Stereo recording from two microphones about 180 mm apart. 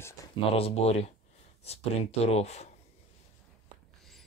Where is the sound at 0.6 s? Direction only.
35° left (ahead or behind).